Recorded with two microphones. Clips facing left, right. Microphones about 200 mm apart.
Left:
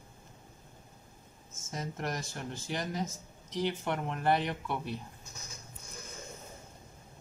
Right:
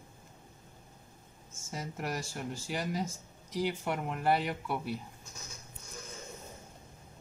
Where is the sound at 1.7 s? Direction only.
5° right (ahead or behind).